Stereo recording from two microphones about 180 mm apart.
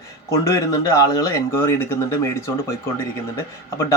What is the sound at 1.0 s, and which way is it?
Speech, 20° left (ahead or behind).